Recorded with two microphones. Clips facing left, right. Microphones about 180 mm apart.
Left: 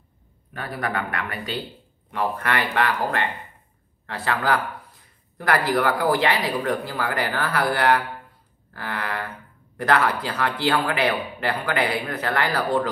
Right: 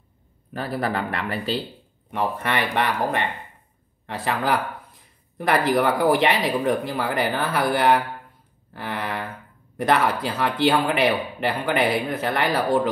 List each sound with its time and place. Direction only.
0.5 s speech: 30° right (ahead or behind)
2.0 s a man's voice: 20° right (ahead or behind)